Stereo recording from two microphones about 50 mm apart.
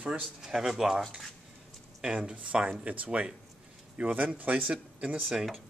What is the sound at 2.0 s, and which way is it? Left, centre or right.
Speech, right.